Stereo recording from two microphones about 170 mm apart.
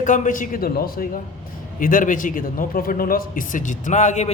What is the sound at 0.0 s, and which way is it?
A man's voice, 50° left (ahead or behind).